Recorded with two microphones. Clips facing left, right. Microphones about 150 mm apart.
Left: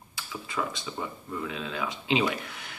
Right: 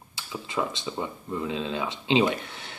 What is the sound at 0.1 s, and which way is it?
Speech, 25° right (ahead or behind).